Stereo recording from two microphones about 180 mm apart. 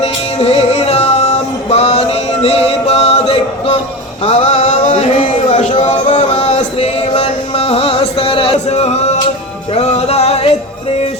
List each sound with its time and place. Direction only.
0.0 s music: 35° left (ahead or behind)